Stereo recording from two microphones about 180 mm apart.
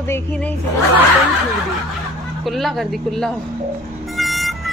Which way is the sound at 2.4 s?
Centre (ahead or behind).